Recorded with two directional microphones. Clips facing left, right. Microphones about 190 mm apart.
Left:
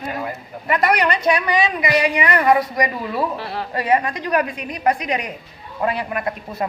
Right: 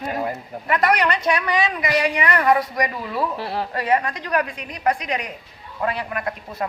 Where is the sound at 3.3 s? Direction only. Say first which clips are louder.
Right 1 dB; 35° right (ahead or behind).